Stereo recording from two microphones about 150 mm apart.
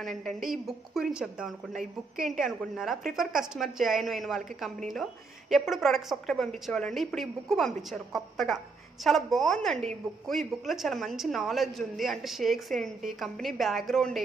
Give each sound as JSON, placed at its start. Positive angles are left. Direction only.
{"t": 0.0, "sound": "a woman's voice", "side_deg": 0}